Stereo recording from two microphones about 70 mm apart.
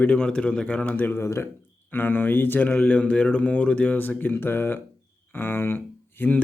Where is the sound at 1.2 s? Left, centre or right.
Left.